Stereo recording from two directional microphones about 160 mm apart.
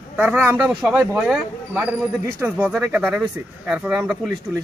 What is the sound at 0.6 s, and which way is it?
A man's voice, centre (ahead or behind).